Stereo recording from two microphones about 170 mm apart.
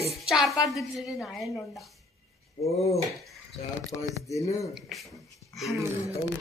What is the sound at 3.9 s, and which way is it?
Speech, 20° left (ahead or behind).